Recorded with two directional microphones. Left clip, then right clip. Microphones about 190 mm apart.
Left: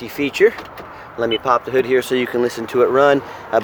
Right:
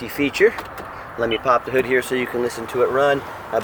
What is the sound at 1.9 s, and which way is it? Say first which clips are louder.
Speech: left 3 dB; 30° left (ahead or behind).